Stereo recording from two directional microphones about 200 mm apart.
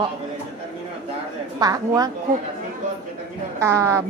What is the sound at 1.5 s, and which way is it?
Speech, 20° right (ahead or behind).